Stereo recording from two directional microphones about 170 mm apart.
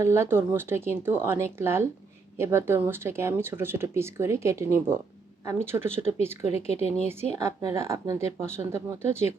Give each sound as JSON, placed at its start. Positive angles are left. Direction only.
{"t": 0.0, "sound": "speech", "side_deg": -15}
{"t": 6.7, "sound": "a woman's voice", "side_deg": 40}
{"t": 7.1, "sound": "speech", "side_deg": -15}